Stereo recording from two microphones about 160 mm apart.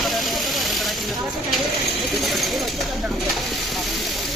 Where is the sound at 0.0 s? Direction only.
Centre (ahead or behind).